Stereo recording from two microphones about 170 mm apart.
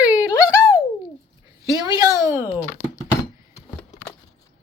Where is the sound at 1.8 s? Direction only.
20° right (ahead or behind).